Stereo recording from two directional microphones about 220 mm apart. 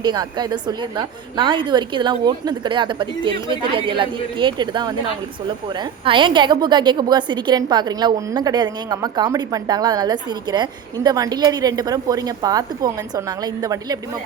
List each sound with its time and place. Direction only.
0.0 s a woman's voice: 20° right (ahead or behind)
6.1 s a woman's voice: 20° right (ahead or behind)